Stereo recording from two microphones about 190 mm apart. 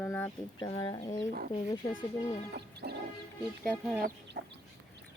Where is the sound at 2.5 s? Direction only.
60° right (ahead or behind).